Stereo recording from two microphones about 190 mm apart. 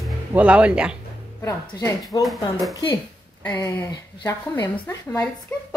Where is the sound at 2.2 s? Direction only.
Centre (ahead or behind).